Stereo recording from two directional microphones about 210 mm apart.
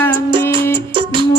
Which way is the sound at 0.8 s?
25° right (ahead or behind).